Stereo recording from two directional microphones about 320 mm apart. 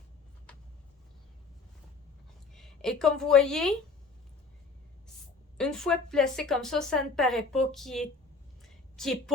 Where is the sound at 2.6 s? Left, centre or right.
Centre.